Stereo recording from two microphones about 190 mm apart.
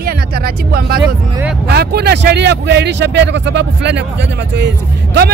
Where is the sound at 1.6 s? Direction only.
60° right (ahead or behind).